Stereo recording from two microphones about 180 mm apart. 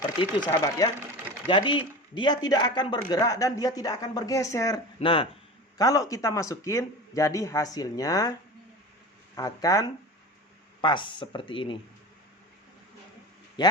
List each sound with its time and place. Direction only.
0.2 s a man's voice: 20° left (ahead or behind)
4.9 s speech: 30° left (ahead or behind)
5.7 s a man's voice: 20° left (ahead or behind)
13.6 s speech: 25° left (ahead or behind)